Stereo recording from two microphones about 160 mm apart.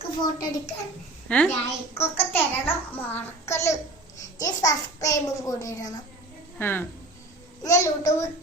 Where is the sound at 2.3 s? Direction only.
10° left (ahead or behind).